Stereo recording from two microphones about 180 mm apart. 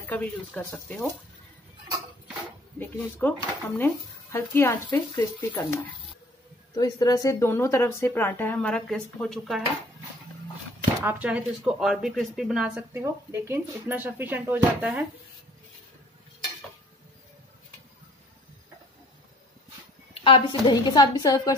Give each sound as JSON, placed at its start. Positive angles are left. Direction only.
{"t": 0.0, "sound": "speech", "side_deg": 5}
{"t": 2.8, "sound": "speech", "side_deg": 10}
{"t": 6.7, "sound": "speech", "side_deg": 20}
{"t": 11.1, "sound": "speech", "side_deg": -5}
{"t": 12.9, "sound": "speech", "side_deg": -15}
{"t": 20.2, "sound": "a woman's voice", "side_deg": 30}